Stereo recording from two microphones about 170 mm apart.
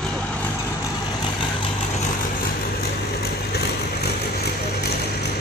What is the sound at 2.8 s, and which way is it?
Vehicle, 65° left (ahead or behind).